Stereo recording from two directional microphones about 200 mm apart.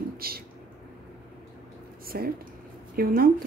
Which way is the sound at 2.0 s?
50° right (ahead or behind).